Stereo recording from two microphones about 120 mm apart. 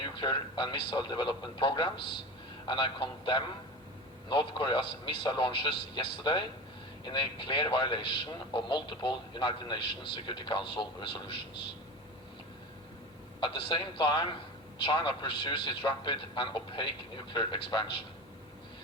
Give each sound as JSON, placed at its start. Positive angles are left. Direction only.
{"t": 0.0, "sound": "a man's voice", "side_deg": 40}
{"t": 13.4, "sound": "a man's voice", "side_deg": 45}